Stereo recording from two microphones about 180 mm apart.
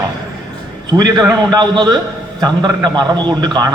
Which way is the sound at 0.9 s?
25° right (ahead or behind).